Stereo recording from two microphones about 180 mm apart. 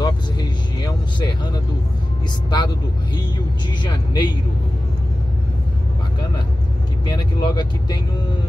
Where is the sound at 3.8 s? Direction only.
25° left (ahead or behind).